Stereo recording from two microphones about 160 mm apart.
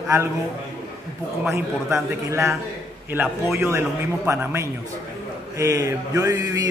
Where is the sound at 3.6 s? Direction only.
15° right (ahead or behind).